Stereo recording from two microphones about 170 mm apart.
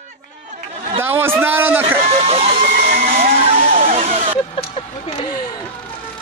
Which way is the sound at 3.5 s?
35° right (ahead or behind).